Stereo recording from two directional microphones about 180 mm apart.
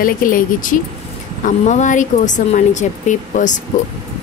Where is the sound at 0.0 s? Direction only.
50° left (ahead or behind).